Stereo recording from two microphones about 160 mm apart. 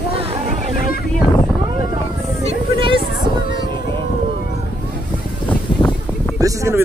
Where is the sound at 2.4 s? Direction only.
35° right (ahead or behind).